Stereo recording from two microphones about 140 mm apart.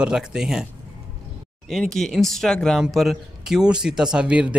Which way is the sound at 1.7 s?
Centre (ahead or behind).